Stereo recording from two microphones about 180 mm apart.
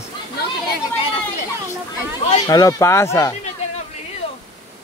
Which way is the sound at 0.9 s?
30° left (ahead or behind).